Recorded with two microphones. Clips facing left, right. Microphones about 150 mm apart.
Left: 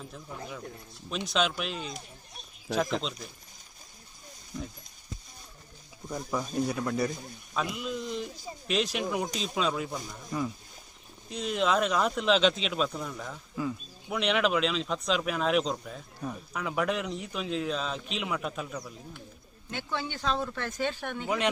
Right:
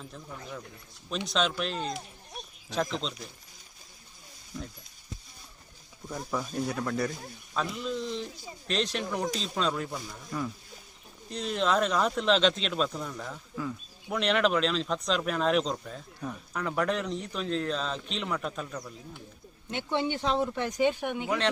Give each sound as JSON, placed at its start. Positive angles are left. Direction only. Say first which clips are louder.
{"t": 1.3, "sound": "speech", "louder": "even", "side_deg": 0}
{"t": 6.3, "sound": "speech", "louder": "even", "side_deg": 0}
{"t": 6.8, "sound": "speech", "louder": "left 1 dB", "side_deg": 15}
{"t": 11.3, "sound": "speech", "louder": "even", "side_deg": 5}
{"t": 19.7, "sound": "speech", "louder": "right 5 dB", "side_deg": -20}
{"t": 21.2, "sound": "speech", "louder": "left 1 dB", "side_deg": 10}